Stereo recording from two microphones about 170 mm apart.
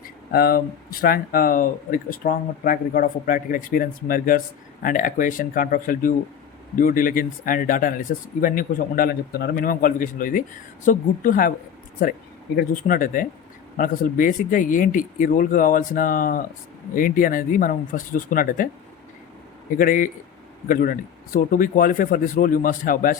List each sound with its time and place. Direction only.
0.3 s speech: 60° left (ahead or behind)
19.8 s speech: 55° left (ahead or behind)